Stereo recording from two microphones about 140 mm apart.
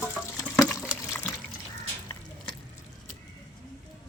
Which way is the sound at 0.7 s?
5° right (ahead or behind).